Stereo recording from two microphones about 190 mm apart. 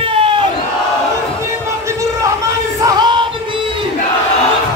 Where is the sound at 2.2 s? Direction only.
15° right (ahead or behind).